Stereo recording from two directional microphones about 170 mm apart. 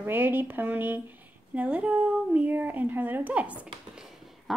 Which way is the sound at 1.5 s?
5° right (ahead or behind).